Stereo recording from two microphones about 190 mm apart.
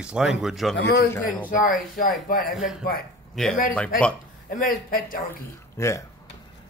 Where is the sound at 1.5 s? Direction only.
45° left (ahead or behind).